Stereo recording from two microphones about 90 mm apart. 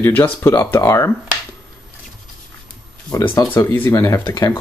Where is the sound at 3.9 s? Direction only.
35° left (ahead or behind).